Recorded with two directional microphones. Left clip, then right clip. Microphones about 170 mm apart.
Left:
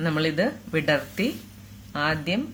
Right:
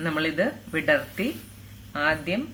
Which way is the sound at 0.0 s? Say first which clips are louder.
Left 1 dB; 40° left (ahead or behind).